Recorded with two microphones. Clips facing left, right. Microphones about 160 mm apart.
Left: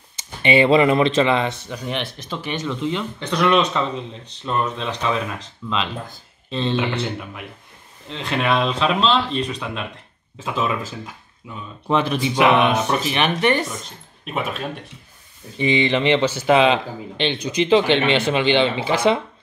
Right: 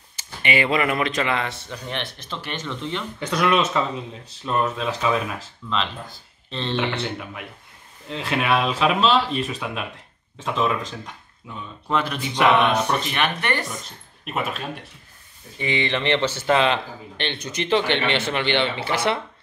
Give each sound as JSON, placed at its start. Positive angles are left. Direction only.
{"t": 0.1, "sound": "speech", "side_deg": 25}
{"t": 3.2, "sound": "speech", "side_deg": -10}
{"t": 6.5, "sound": "speech", "side_deg": 10}
{"t": 13.1, "sound": "speech", "side_deg": 20}
{"t": 14.2, "sound": "speech", "side_deg": 0}
{"t": 15.5, "sound": "speech", "side_deg": 20}